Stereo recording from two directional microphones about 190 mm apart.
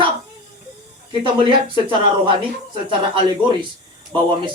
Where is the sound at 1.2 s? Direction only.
25° right (ahead or behind).